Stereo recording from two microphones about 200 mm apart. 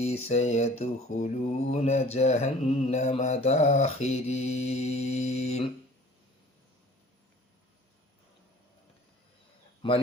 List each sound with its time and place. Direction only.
0.0 s mantra: 30° left (ahead or behind)